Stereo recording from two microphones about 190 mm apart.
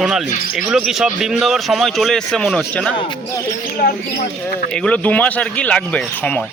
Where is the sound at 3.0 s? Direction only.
25° left (ahead or behind).